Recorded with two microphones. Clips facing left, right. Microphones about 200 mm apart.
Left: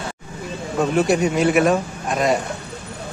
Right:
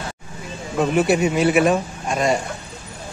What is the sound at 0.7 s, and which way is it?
Speech, 5° right (ahead or behind).